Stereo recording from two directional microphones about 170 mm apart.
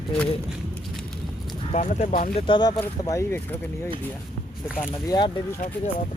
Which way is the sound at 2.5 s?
25° left (ahead or behind).